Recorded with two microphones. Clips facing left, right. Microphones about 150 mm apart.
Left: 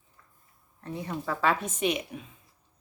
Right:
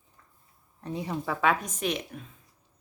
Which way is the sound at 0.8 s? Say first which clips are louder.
Right 2 dB; 15° right (ahead or behind).